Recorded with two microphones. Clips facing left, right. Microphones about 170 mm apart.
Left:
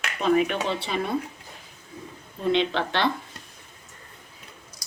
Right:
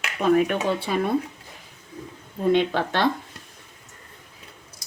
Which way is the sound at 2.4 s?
45° right (ahead or behind).